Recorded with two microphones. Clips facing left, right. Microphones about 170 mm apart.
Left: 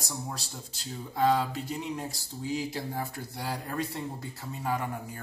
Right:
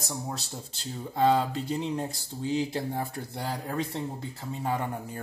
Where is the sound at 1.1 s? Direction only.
30° right (ahead or behind).